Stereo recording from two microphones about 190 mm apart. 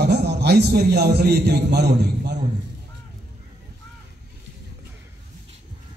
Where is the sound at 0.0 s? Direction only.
60° right (ahead or behind).